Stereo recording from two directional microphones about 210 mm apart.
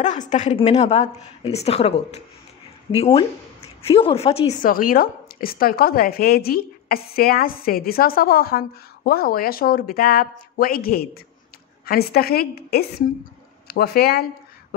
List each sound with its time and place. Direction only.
0.3 s a woman's voice: 35° left (ahead or behind)
4.6 s a woman's voice: 40° left (ahead or behind)